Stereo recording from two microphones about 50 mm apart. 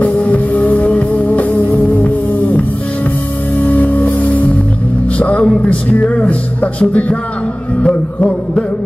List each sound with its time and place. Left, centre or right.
0.0 s music: left
3.6 s music: left